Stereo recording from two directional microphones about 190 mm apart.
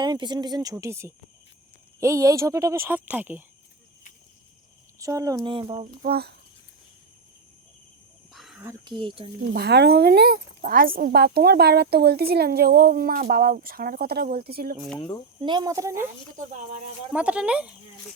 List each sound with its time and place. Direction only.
0.0 s speech: 25° right (ahead or behind)
4.9 s speech: 15° right (ahead or behind)
6.0 s speech: 55° right (ahead or behind)
8.3 s cricket: centre (ahead or behind)
8.6 s speech: 25° right (ahead or behind)
9.5 s a woman's voice: 60° right (ahead or behind)
15.4 s speech: 25° right (ahead or behind)
17.1 s speech: 5° right (ahead or behind)